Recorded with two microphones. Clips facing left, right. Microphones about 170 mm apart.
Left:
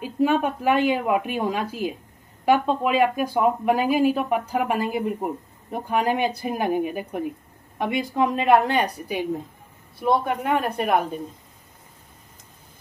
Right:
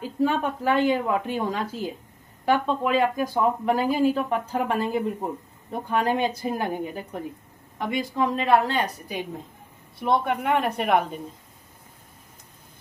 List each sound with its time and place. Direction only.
0.0 s speech: 15° left (ahead or behind)
10.0 s speech: centre (ahead or behind)